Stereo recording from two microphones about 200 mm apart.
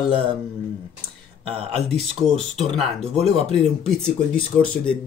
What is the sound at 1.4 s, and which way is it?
Speech, 30° right (ahead or behind).